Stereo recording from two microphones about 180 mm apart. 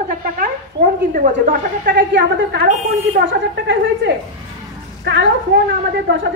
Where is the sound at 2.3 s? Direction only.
65° right (ahead or behind).